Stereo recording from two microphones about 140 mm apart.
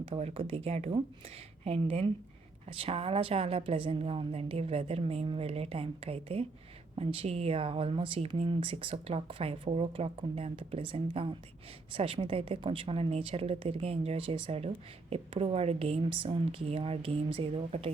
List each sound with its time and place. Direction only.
0.1 s a woman's voice: 45° right (ahead or behind)